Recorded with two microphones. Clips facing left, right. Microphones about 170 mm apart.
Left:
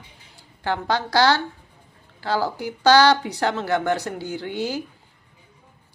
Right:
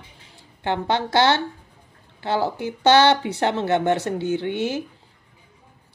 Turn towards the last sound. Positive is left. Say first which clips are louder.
# right 3 dB
turn(degrees=-25)  # may be behind; listen again after turning